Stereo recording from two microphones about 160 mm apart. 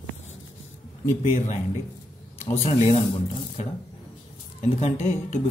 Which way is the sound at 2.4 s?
45° left (ahead or behind).